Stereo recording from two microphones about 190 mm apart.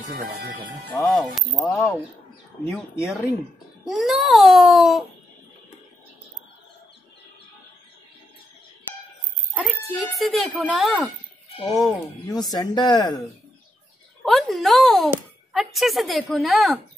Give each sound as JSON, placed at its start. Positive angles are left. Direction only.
{"t": 0.1, "sound": "speech", "side_deg": -60}
{"t": 0.8, "sound": "a child's voice", "side_deg": 10}
{"t": 3.8, "sound": "a child's voice", "side_deg": 0}
{"t": 9.5, "sound": "a child's voice", "side_deg": 0}
{"t": 12.3, "sound": "speech", "side_deg": 20}
{"t": 14.2, "sound": "a child's voice", "side_deg": 0}